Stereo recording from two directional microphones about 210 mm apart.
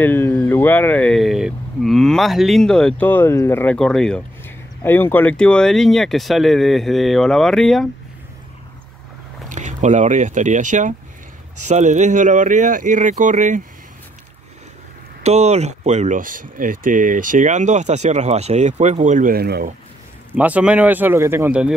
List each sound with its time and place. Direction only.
0.0 s speech: 10° left (ahead or behind)
9.5 s speech: 35° right (ahead or behind)
15.2 s speech: 30° right (ahead or behind); by 19.7 s 45° right (ahead or behind)
20.3 s speech: 5° right (ahead or behind)